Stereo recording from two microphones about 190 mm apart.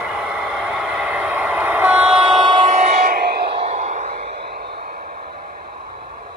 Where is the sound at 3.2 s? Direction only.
60° right (ahead or behind).